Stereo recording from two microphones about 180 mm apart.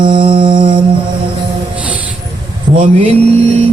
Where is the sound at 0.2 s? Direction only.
30° right (ahead or behind).